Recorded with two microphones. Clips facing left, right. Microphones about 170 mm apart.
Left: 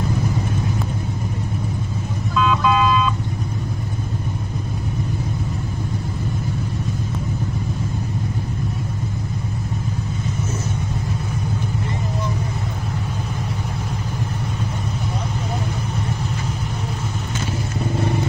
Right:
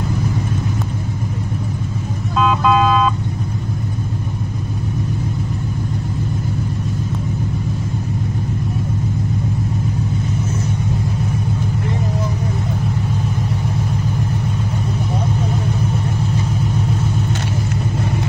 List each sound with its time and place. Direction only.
2.3 s music: 60° right (ahead or behind)